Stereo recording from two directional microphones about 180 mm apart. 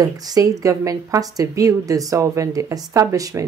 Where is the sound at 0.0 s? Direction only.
20° right (ahead or behind).